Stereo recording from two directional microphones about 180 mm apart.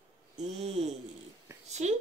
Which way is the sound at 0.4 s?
40° right (ahead or behind).